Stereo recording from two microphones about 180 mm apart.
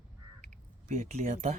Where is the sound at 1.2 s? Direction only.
45° right (ahead or behind).